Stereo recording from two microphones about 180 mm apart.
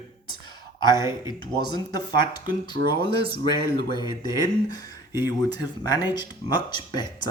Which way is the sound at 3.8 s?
25° left (ahead or behind).